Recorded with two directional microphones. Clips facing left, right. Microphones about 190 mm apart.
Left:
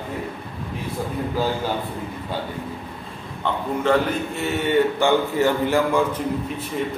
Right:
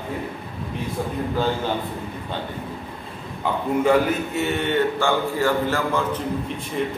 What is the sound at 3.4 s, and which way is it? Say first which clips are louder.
A man's voice: right 2 dB; 5° right (ahead or behind).